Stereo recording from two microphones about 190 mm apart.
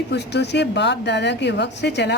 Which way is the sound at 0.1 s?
65° left (ahead or behind).